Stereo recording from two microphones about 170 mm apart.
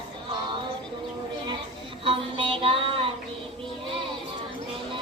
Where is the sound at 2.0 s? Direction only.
30° right (ahead or behind).